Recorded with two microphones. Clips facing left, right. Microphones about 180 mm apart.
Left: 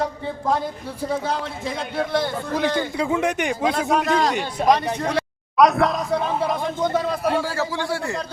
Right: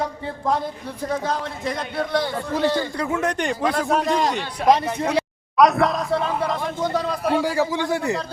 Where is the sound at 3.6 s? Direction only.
25° left (ahead or behind).